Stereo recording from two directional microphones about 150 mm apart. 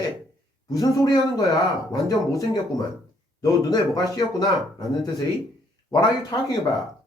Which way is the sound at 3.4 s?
25° left (ahead or behind).